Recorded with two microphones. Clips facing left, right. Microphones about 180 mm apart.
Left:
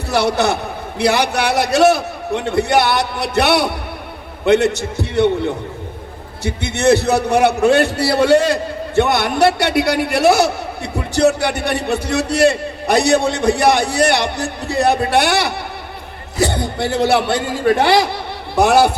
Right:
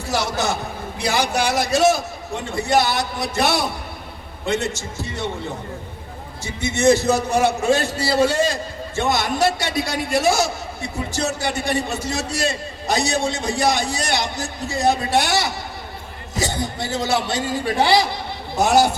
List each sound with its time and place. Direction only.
0.1 s a man's voice: 65° left (ahead or behind)
6.4 s a man's voice: 65° left (ahead or behind)